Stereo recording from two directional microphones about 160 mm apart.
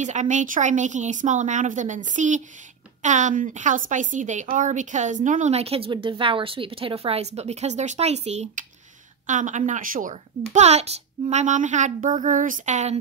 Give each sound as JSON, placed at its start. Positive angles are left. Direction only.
{"t": 0.0, "sound": "a woman's voice", "side_deg": -50}
{"t": 10.5, "sound": "a woman's voice", "side_deg": -45}